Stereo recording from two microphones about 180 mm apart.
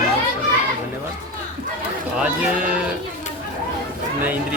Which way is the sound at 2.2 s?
5° right (ahead or behind).